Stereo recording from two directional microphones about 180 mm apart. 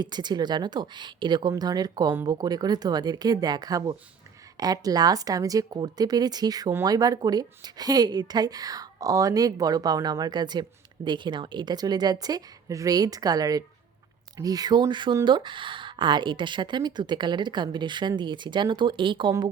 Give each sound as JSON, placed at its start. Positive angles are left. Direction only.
{"t": 0.0, "sound": "speech", "side_deg": -25}